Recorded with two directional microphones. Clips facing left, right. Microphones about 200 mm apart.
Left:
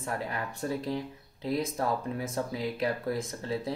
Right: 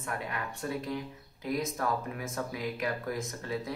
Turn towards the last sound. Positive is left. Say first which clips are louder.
# left 2 dB
turn(degrees=30)  # may be behind; listen again after turning